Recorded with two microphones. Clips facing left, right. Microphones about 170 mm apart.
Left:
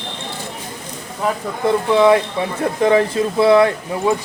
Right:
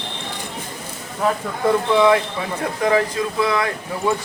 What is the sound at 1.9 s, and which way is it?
Speech, 25° left (ahead or behind).